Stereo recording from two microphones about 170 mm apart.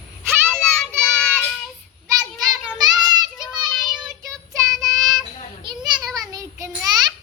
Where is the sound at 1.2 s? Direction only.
5° left (ahead or behind).